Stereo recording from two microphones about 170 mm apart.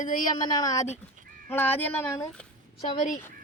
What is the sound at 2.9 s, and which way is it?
Speech, 50° left (ahead or behind).